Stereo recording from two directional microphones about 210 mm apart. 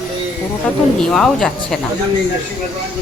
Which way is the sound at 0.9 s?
5° left (ahead or behind).